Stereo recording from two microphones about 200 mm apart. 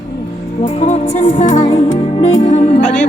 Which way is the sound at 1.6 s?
30° left (ahead or behind).